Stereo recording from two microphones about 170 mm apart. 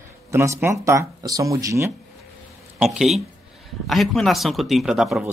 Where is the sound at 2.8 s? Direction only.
5° right (ahead or behind).